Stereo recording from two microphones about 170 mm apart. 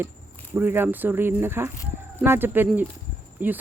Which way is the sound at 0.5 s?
10° right (ahead or behind).